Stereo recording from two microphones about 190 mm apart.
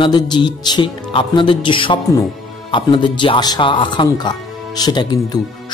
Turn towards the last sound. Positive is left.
turn(degrees=20)  # may be behind; listen again after turning